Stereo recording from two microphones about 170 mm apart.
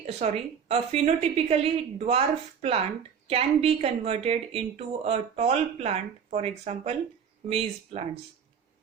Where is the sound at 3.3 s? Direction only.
35° right (ahead or behind).